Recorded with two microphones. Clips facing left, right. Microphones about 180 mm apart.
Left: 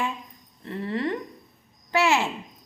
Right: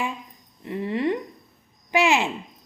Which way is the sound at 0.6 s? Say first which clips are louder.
Right 3 dB; 15° right (ahead or behind).